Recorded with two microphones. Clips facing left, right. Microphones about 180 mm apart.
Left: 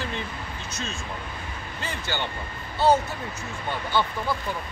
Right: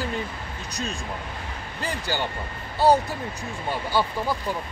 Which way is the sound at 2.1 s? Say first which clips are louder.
Right 1 dB; 40° right (ahead or behind).